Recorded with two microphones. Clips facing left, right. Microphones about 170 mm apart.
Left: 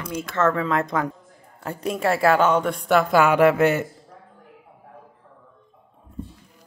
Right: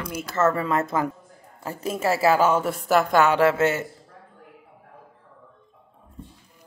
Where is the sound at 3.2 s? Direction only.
15° left (ahead or behind).